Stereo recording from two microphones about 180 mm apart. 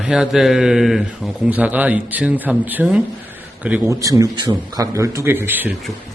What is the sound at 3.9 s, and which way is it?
A man's voice, 20° right (ahead or behind).